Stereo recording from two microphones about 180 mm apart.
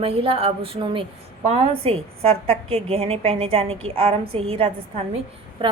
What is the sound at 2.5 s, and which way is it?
A woman's voice, 35° right (ahead or behind).